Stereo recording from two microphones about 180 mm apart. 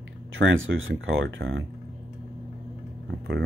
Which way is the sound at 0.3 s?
90° right.